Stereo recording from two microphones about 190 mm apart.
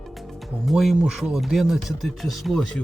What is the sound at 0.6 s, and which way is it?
Speech, centre (ahead or behind).